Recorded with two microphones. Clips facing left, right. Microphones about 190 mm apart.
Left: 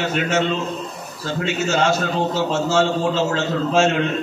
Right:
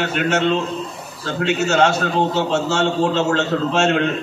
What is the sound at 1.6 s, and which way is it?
A man's voice, 65° right (ahead or behind).